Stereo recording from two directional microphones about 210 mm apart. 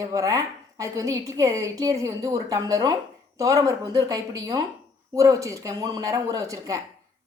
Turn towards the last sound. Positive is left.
turn(degrees=-15)  # may be behind; listen again after turning